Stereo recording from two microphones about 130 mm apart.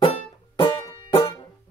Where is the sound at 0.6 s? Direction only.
30° left (ahead or behind).